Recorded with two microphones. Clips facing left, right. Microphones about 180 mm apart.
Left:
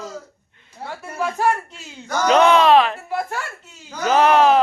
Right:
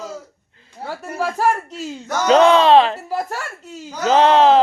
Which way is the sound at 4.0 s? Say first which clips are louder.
Right 2 dB; 25° right (ahead or behind).